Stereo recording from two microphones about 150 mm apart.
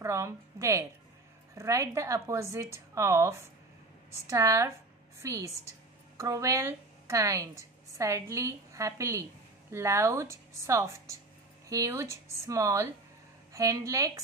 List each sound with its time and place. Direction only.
0.0 s a woman's voice: 20° right (ahead or behind)